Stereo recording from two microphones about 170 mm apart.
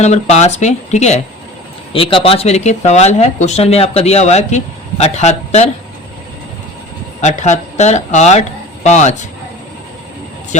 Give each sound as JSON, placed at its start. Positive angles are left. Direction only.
{"t": 0.0, "sound": "speech", "side_deg": 40}
{"t": 1.9, "sound": "speech", "side_deg": 30}
{"t": 7.2, "sound": "speech", "side_deg": 45}
{"t": 10.5, "sound": "speech", "side_deg": 45}